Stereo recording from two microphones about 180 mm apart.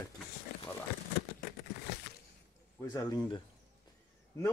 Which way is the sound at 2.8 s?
15° left (ahead or behind).